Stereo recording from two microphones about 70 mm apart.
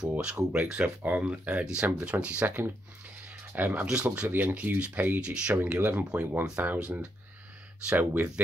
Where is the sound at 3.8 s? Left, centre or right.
Centre.